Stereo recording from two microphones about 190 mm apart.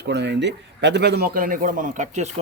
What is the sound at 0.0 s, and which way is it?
A man's voice, 65° right (ahead or behind).